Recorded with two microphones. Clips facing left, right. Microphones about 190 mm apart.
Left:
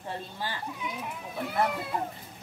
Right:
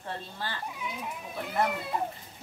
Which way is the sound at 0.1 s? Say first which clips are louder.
Left 1 dB; 15° left (ahead or behind).